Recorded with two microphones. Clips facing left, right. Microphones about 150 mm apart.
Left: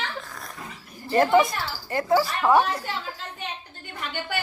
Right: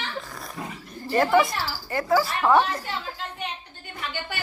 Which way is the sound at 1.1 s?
20° left (ahead or behind).